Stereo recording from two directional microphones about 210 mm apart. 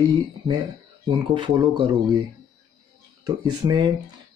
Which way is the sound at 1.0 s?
20° right (ahead or behind).